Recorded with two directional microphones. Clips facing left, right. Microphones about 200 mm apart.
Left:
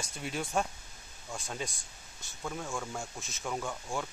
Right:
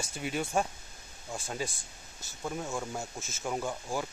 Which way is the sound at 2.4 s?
15° right (ahead or behind).